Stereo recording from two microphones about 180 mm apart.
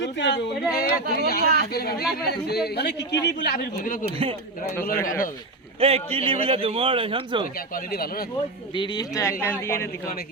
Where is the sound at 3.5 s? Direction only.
50° left (ahead or behind).